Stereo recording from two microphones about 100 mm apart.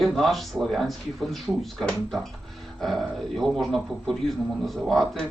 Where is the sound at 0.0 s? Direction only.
Centre (ahead or behind).